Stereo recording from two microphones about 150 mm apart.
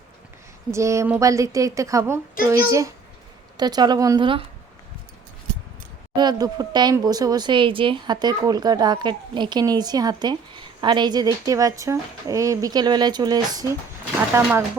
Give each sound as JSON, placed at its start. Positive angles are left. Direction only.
{"t": 0.7, "sound": "speech", "side_deg": -20}
{"t": 6.1, "sound": "speech", "side_deg": -25}